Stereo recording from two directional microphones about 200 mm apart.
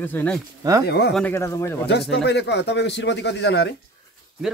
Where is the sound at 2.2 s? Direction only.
60° left (ahead or behind).